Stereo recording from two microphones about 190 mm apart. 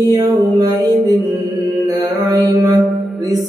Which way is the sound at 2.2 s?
20° right (ahead or behind).